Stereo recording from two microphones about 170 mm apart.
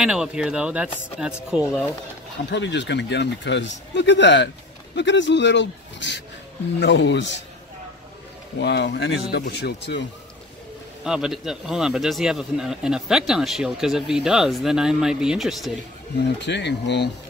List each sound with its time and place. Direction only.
0.0 s speech: 5° right (ahead or behind)
2.5 s speech: 90° left
8.5 s speech: 90° left
11.1 s speech: 5° right (ahead or behind)
16.3 s speech: 90° left